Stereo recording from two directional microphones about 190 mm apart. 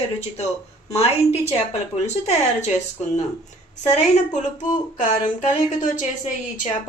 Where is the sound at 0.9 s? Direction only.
35° left (ahead or behind).